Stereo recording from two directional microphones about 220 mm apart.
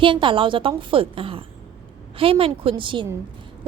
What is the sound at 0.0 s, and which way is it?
A woman's voice, 20° right (ahead or behind).